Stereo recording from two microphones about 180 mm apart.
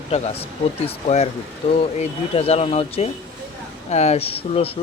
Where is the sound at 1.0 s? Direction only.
35° left (ahead or behind).